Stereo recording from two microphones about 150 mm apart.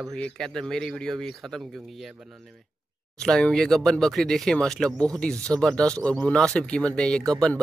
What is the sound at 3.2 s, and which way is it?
Speech, 5° left (ahead or behind).